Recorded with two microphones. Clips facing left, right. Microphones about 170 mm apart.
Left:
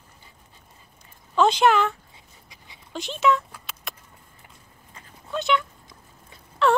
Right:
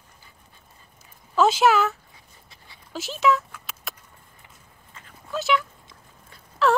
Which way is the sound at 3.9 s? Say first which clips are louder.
Even; centre (ahead or behind).